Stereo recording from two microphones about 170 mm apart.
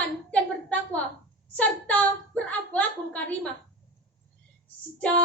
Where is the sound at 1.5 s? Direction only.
10° left (ahead or behind).